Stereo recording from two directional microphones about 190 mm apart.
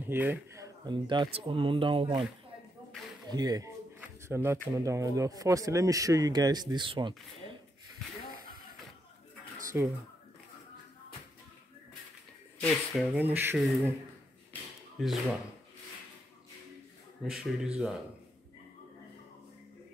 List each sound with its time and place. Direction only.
0.0 s speech: 10° right (ahead or behind)
0.8 s speech: 25° right (ahead or behind)
3.3 s speech: 20° right (ahead or behind)
4.0 s a sound: 10° right (ahead or behind)
4.7 s speech: 15° right (ahead or behind)
9.7 s speech: 10° right (ahead or behind)
12.5 s speech: 5° left (ahead or behind)
15.0 s speech: centre (ahead or behind)
17.2 s speech: centre (ahead or behind)